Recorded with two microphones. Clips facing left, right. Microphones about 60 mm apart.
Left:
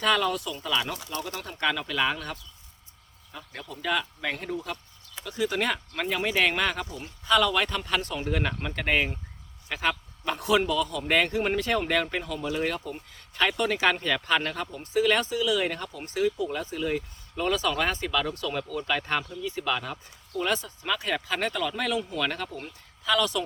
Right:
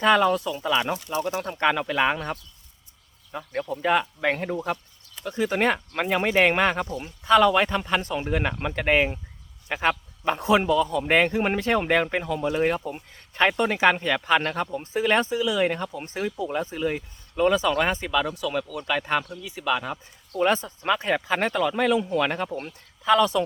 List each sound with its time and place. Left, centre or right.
0.0 s a man's voice: right
1.4 s a man's voice: right; by 20.0 s centre
20.4 s a man's voice: right